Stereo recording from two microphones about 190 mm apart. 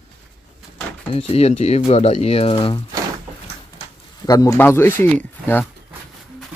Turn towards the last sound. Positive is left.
turn(degrees=10)  # may be behind; listen again after turning